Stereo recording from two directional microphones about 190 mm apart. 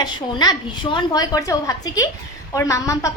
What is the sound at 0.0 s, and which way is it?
A woman's voice, 20° left (ahead or behind).